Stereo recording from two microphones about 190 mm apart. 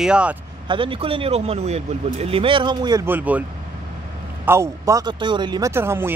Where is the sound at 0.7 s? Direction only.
30° right (ahead or behind).